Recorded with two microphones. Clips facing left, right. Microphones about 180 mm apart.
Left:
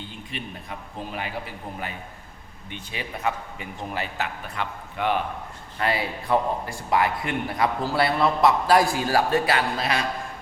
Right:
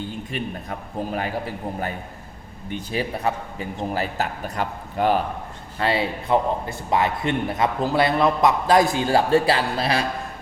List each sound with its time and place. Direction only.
0.3 s a man's voice: 45° right (ahead or behind)
5.8 s a man's voice: 25° right (ahead or behind)